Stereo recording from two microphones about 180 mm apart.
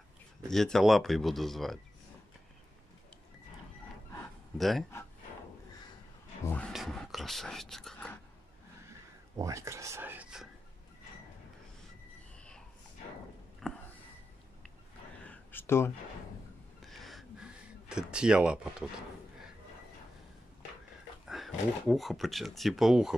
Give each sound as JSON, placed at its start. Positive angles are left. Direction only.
{"t": 0.5, "sound": "speech", "side_deg": 0}
{"t": 4.6, "sound": "speech", "side_deg": 0}
{"t": 6.4, "sound": "speech", "side_deg": 10}
{"t": 6.7, "sound": "whispering", "side_deg": 0}
{"t": 9.4, "sound": "speech", "side_deg": -15}
{"t": 13.6, "sound": "a sound", "side_deg": 0}
{"t": 15.2, "sound": "a sound", "side_deg": 10}
{"t": 16.8, "sound": "a sound", "side_deg": 0}
{"t": 21.3, "sound": "speech", "side_deg": 0}